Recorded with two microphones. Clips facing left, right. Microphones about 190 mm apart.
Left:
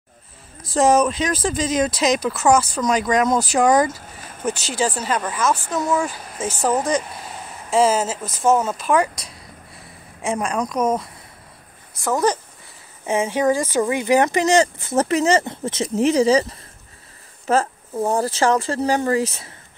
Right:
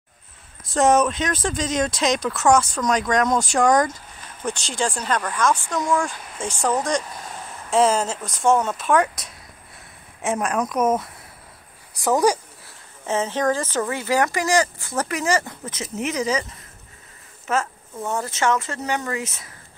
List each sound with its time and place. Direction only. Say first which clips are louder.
0.7 s speech: left 1 dB; centre (ahead or behind)
13.0 s speech: left 3 dB; 10° left (ahead or behind); by 19.5 s 30° left (ahead or behind)